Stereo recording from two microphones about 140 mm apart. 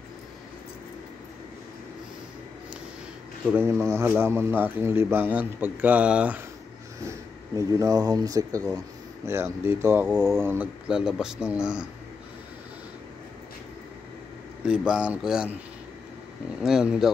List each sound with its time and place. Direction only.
3.5 s speech: 20° right (ahead or behind)
7.1 s speech: 25° right (ahead or behind); by 11.8 s 5° right (ahead or behind)
14.6 s speech: 5° right (ahead or behind)
16.6 s speech: 5° right (ahead or behind)